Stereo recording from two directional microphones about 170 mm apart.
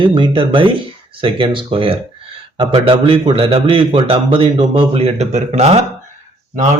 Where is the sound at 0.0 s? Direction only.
30° right (ahead or behind).